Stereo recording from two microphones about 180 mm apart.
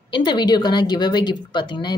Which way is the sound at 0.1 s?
25° left (ahead or behind).